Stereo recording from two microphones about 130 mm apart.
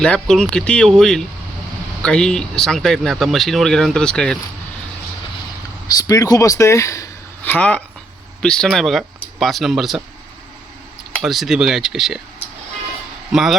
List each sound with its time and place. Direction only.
0.0 s speech: 5° left (ahead or behind)
5.9 s speech: 25° left (ahead or behind)
7.4 s speech: 10° left (ahead or behind)
11.2 s speech: centre (ahead or behind)
13.3 s speech: centre (ahead or behind)